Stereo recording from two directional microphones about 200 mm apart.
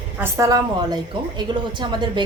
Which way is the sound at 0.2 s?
15° right (ahead or behind).